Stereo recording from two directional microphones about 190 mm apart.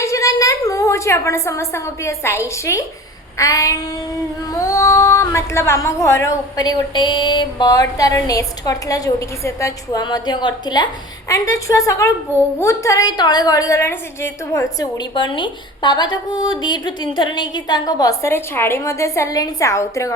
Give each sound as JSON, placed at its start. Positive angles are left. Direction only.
{"t": 0.0, "sound": "a woman's voice", "side_deg": 15}